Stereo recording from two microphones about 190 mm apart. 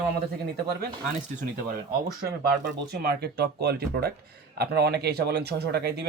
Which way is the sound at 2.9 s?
55° right (ahead or behind).